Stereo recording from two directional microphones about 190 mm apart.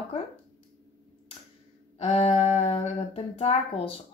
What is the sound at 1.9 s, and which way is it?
Speech, 30° left (ahead or behind).